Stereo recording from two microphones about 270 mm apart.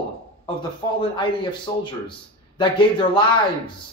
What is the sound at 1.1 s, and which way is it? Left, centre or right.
Speech, centre.